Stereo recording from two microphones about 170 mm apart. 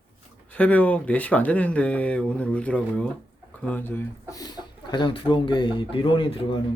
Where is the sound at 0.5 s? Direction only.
10° left (ahead or behind); by 6.6 s 30° left (ahead or behind).